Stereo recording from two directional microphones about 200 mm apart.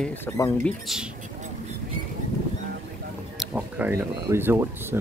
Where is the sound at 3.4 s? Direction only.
5° right (ahead or behind).